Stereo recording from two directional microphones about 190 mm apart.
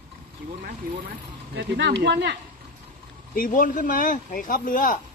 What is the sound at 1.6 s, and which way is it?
Speech, 65° right (ahead or behind).